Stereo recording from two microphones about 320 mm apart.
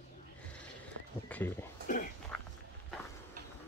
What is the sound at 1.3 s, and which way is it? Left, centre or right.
Speech, centre.